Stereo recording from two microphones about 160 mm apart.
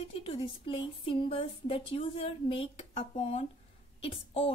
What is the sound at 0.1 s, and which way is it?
Speech, 35° left (ahead or behind).